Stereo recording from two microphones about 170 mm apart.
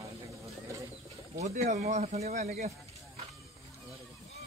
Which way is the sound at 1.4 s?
45° right (ahead or behind).